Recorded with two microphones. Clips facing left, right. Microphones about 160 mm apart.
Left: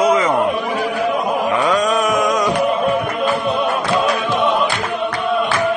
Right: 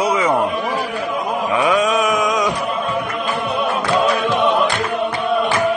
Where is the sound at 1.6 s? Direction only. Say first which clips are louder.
Right 3 dB; 5° right (ahead or behind).